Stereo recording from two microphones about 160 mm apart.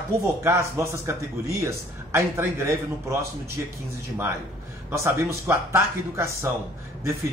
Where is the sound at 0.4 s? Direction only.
15° right (ahead or behind).